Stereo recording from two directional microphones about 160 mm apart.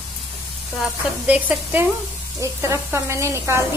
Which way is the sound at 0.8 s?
5° right (ahead or behind).